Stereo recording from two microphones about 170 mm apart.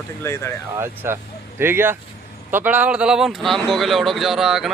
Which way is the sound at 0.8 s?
15° right (ahead or behind).